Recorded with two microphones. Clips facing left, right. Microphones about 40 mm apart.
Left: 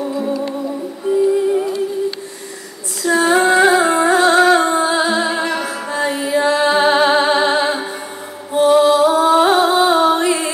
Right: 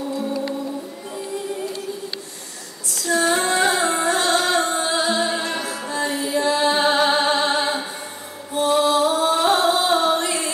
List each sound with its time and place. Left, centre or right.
0.1 s music: left
3.0 s music: left